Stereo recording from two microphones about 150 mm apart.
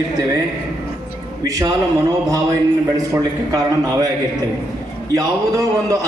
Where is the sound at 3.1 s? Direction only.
25° right (ahead or behind).